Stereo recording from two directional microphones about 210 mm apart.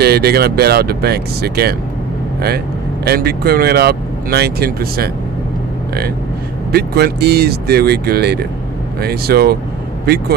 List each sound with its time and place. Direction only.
0.0 s speech: 50° right (ahead or behind)
3.0 s speech: 50° right (ahead or behind)
6.7 s speech: 50° right (ahead or behind)